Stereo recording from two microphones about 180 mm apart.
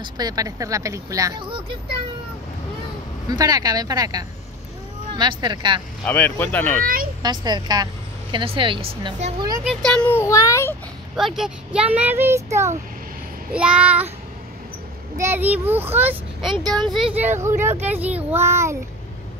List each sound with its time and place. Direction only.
0.0 s speech: 20° right (ahead or behind)
3.3 s speech: 20° right (ahead or behind)
6.0 s a child's voice: 10° left (ahead or behind)
6.8 s speech: 50° right (ahead or behind)
7.2 s speech: 25° right (ahead or behind)
9.7 s a child's voice: 5° left (ahead or behind)
11.1 s a child's voice: centre (ahead or behind)
13.5 s a child's voice: 5° right (ahead or behind)
15.1 s a child's voice: 15° right (ahead or behind)